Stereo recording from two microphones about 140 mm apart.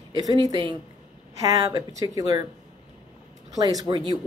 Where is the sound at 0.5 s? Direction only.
30° right (ahead or behind).